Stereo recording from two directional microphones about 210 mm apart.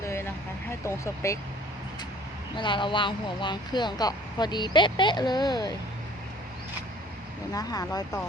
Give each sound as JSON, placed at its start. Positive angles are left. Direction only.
{"t": 0.0, "sound": "vehicle", "side_deg": 15}
{"t": 2.6, "sound": "speech", "side_deg": 20}
{"t": 7.5, "sound": "speech", "side_deg": 15}